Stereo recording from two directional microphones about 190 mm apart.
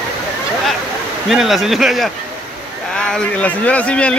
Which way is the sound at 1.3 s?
Centre (ahead or behind).